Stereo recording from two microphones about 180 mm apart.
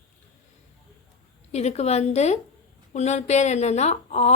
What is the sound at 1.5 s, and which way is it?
Speech, 35° left (ahead or behind).